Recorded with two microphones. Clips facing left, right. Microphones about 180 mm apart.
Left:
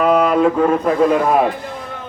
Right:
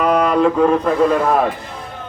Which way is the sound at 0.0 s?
5° left (ahead or behind).